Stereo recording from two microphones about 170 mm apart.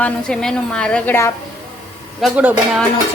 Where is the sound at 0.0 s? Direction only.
5° left (ahead or behind).